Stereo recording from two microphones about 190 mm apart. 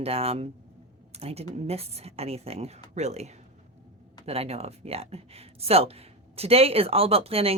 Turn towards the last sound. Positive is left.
turn(degrees=-30)  # may be behind; listen again after turning